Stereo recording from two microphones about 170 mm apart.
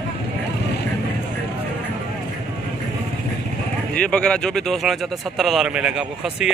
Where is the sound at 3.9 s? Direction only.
5° left (ahead or behind).